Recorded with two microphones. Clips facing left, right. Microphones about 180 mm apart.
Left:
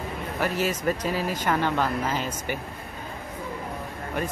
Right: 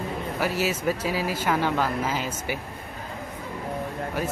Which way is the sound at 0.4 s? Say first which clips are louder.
Even; 5° right (ahead or behind).